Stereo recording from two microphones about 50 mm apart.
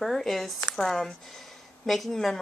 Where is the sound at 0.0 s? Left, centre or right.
Centre.